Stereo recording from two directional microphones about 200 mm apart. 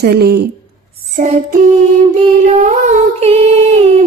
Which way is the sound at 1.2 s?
40° right (ahead or behind).